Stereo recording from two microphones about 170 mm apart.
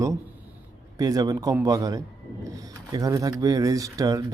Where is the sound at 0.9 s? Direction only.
20° right (ahead or behind).